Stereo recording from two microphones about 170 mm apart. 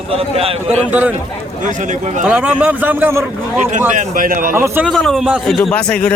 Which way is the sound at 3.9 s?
50° right (ahead or behind).